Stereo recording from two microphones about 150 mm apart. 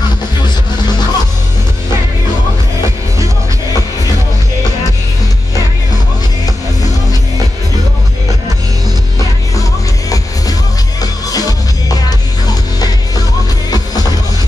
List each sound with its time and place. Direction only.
0.4 s music: 30° left (ahead or behind)
9.6 s music: 25° left (ahead or behind)